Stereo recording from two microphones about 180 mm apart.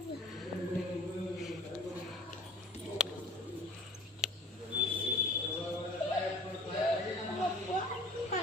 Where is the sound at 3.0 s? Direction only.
5° right (ahead or behind).